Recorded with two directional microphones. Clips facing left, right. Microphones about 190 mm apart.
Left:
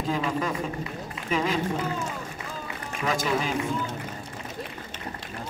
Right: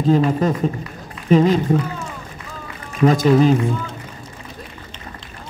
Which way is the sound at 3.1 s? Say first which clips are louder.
Right 13 dB; 35° right (ahead or behind).